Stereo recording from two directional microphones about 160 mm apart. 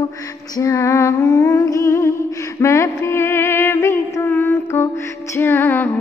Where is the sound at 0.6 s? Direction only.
20° left (ahead or behind).